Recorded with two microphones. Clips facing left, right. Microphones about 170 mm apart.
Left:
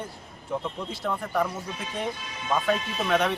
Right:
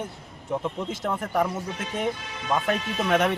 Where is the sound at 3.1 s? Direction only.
10° right (ahead or behind).